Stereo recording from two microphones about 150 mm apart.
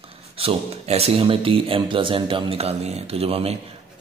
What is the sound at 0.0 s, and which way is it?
A man's voice, 40° right (ahead or behind).